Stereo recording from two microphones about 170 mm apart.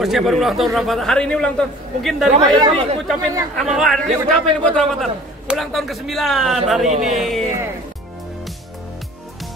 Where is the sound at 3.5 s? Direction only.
Centre (ahead or behind).